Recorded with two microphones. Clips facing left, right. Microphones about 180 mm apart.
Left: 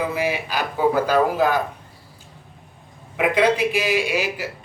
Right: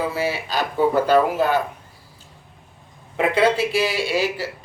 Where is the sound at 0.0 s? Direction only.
15° left (ahead or behind).